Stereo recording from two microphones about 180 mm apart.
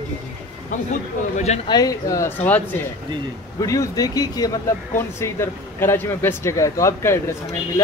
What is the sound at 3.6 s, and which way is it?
A man's voice, 20° left (ahead or behind).